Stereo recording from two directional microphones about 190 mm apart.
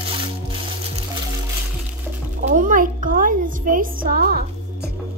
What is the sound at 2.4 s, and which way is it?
Music, 45° right (ahead or behind).